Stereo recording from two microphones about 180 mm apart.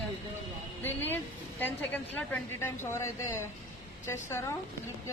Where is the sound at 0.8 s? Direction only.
10° left (ahead or behind).